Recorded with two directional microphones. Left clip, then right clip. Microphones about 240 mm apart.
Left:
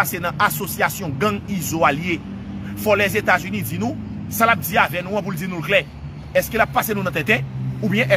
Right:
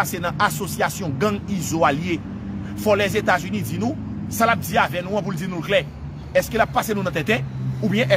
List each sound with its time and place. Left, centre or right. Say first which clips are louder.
0.0 s speech: left 2 dB; centre